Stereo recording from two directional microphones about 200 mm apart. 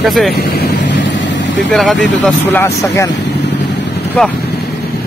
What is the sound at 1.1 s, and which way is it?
Vehicle, 65° left (ahead or behind).